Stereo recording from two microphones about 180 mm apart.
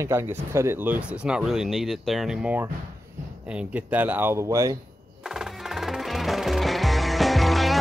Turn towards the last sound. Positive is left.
turn(degrees=0)  # may be behind; listen again after turning